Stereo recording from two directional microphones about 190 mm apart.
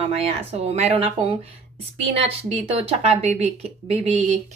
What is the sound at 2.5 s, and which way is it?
A woman's voice, 30° right (ahead or behind).